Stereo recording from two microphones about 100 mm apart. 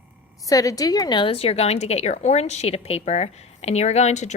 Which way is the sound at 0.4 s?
35° left (ahead or behind).